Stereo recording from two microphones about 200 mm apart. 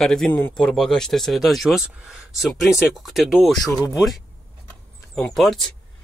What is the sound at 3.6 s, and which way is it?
Speech, 15° left (ahead or behind).